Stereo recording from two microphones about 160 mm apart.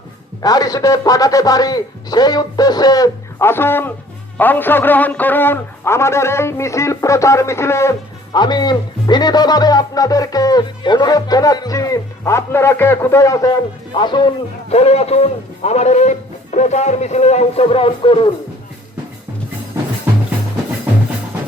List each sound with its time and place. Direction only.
0.4 s a man's voice: 25° left (ahead or behind)
14.7 s a man's voice: 40° left (ahead or behind)